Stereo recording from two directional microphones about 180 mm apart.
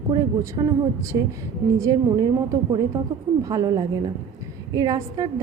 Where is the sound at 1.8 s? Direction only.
20° right (ahead or behind).